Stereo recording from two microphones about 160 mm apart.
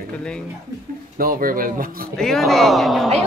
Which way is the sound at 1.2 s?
60° right (ahead or behind).